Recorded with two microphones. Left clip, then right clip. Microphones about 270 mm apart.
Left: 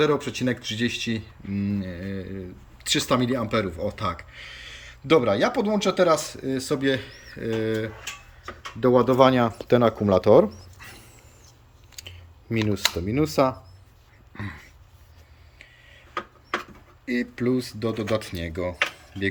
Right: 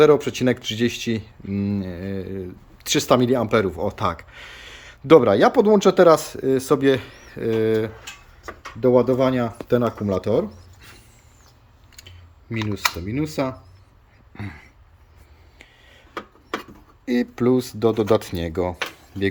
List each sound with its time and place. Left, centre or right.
0.0 s speech: centre
12.0 s typing: centre
13.1 s speech: centre
15.5 s a sound: centre
17.1 s speech: centre